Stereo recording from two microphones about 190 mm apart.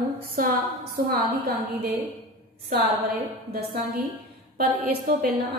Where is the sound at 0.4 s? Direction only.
50° right (ahead or behind).